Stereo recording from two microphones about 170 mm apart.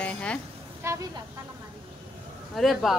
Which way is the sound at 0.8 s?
15° right (ahead or behind).